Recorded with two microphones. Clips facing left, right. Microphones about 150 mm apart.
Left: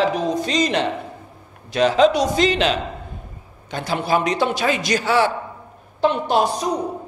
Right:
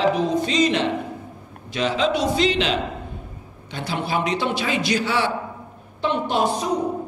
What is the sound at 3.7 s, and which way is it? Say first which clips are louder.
A man's voice: left 4 dB; 45° left (ahead or behind).